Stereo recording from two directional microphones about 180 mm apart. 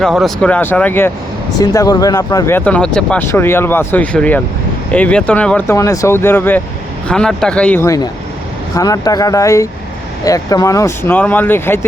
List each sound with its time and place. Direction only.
0.0 s speech: centre (ahead or behind)